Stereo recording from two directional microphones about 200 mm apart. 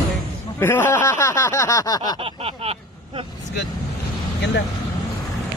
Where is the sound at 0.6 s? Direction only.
10° left (ahead or behind).